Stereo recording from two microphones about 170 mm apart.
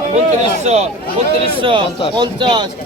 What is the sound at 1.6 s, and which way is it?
Speech, 30° right (ahead or behind).